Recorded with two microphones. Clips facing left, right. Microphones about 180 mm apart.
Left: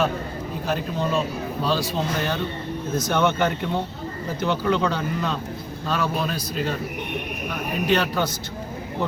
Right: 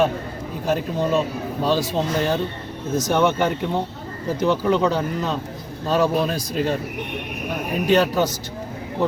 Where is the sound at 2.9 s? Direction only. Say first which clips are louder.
Right 4 dB; 40° right (ahead or behind).